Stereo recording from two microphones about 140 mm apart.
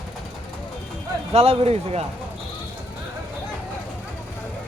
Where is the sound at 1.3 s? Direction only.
45° right (ahead or behind).